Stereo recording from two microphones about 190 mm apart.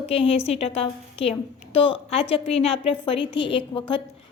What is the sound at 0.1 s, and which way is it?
A woman's voice, 30° left (ahead or behind).